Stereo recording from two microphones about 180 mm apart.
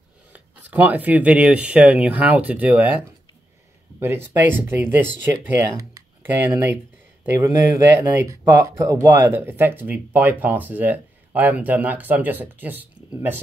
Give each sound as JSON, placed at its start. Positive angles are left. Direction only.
{"t": 0.3, "sound": "speech", "side_deg": -10}
{"t": 4.0, "sound": "speech", "side_deg": -15}